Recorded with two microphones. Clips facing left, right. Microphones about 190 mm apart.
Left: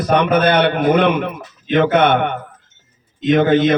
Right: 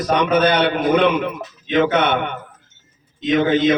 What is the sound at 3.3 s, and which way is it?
Speech, 55° left (ahead or behind).